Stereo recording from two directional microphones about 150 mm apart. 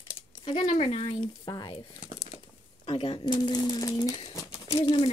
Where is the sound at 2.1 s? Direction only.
55° left (ahead or behind).